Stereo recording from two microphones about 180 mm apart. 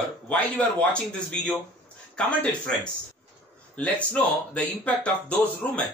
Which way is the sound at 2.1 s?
5° left (ahead or behind).